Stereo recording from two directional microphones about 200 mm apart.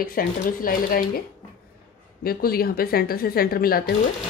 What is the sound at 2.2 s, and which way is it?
Speech, 50° left (ahead or behind).